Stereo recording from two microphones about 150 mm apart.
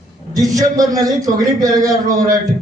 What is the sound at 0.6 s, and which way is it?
A man's voice, 25° right (ahead or behind).